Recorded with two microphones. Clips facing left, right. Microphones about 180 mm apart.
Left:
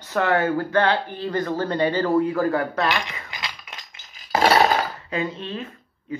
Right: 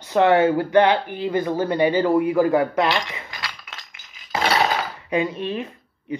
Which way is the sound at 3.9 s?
40° left (ahead or behind).